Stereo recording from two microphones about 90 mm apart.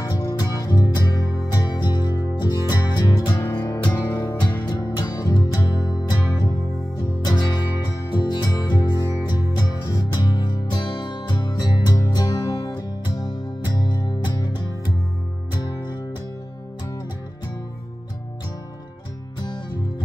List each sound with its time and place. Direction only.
0.0 s music: 45° left (ahead or behind)